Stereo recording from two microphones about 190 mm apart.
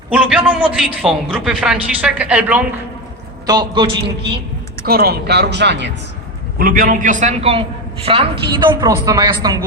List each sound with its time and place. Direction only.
0.1 s a man's voice: 5° right (ahead or behind)
3.4 s a woman's voice: 20° right (ahead or behind)
4.9 s speech: 55° right (ahead or behind)
6.6 s a man's voice: 50° right (ahead or behind); by 9.6 s 20° right (ahead or behind)